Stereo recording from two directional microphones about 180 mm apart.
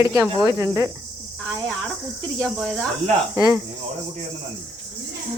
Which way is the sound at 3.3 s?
20° right (ahead or behind).